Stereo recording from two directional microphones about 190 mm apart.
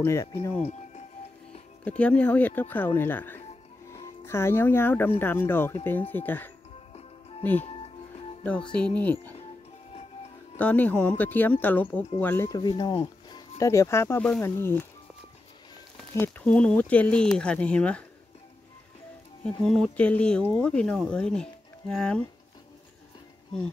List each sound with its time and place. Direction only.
0.0 s speech: 15° left (ahead or behind)
0.6 s music: 35° left (ahead or behind)
1.9 s speech: 5° left (ahead or behind)
6.9 s music: 30° left (ahead or behind)
8.5 s speech: 5° left (ahead or behind)
10.6 s speech: 5° left (ahead or behind)
16.2 s speech: 10° left (ahead or behind)
19.4 s speech: 5° left (ahead or behind)